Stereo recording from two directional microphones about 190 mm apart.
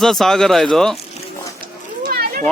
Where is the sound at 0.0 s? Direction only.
Centre (ahead or behind).